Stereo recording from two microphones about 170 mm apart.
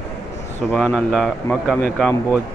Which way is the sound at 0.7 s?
Centre (ahead or behind).